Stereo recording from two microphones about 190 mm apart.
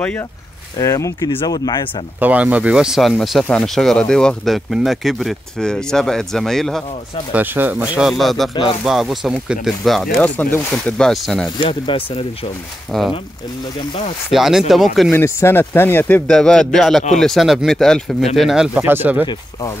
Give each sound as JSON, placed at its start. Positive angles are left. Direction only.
{"t": 0.7, "sound": "speech", "side_deg": 15}
{"t": 2.1, "sound": "speech", "side_deg": -10}
{"t": 7.3, "sound": "speech", "side_deg": -10}
{"t": 11.8, "sound": "speech", "side_deg": 30}
{"t": 14.3, "sound": "speech", "side_deg": 0}
{"t": 15.0, "sound": "speech", "side_deg": 10}